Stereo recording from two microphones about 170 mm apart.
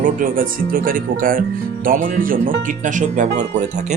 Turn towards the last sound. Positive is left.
turn(degrees=-45)  # may be behind; listen again after turning